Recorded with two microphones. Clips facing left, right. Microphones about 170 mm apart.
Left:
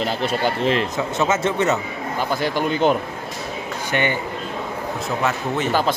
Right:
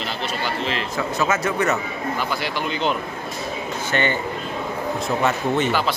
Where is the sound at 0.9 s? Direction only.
20° left (ahead or behind).